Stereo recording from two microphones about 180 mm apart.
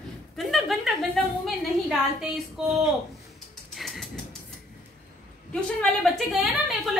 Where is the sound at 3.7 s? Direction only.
Centre (ahead or behind).